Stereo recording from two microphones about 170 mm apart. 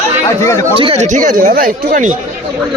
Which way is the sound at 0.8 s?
35° right (ahead or behind).